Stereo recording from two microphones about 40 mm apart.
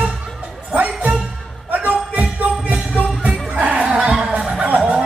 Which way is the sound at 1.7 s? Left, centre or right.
Right.